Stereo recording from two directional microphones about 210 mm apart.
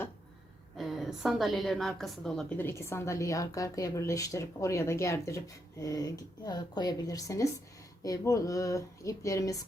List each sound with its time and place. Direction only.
0.8 s a woman's voice: centre (ahead or behind); by 9.6 s 15° left (ahead or behind)